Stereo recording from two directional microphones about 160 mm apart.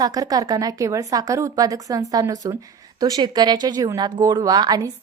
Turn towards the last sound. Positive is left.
turn(degrees=-25)  # may be behind; listen again after turning